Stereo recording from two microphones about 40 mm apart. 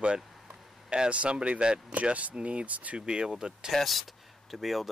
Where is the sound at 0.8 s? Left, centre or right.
Right.